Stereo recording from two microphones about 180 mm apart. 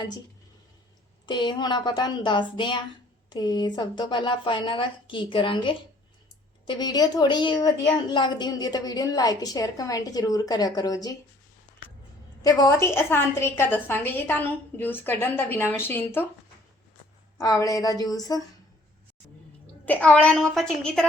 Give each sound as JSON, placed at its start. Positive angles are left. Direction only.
{"t": 1.3, "sound": "a woman's voice", "side_deg": 25}
{"t": 12.4, "sound": "a woman's voice", "side_deg": 20}
{"t": 17.3, "sound": "a woman's voice", "side_deg": 20}
{"t": 19.8, "sound": "a woman's voice", "side_deg": 10}